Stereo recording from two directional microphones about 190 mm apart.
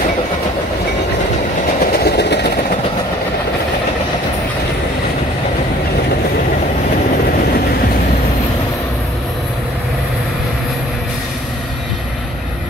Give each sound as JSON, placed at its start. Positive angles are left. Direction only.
{"t": 2.0, "sound": "train", "side_deg": 60}